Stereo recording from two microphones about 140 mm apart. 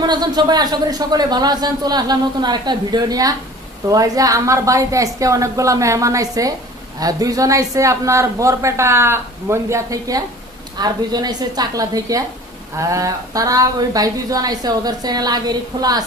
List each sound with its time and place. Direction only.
0.0 s speech: 30° right (ahead or behind)